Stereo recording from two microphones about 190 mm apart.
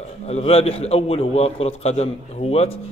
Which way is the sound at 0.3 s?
30° left (ahead or behind).